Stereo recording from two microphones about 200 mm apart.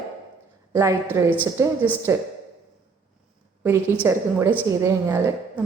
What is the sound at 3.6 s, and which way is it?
A woman's voice, 10° right (ahead or behind).